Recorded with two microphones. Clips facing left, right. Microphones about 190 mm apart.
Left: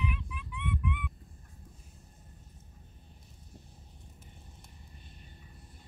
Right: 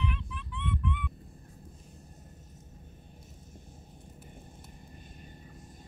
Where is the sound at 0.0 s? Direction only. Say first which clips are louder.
Right 1 dB; 10° left (ahead or behind).